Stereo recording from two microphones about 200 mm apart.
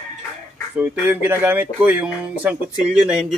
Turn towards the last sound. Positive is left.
turn(degrees=-5)  # may be behind; listen again after turning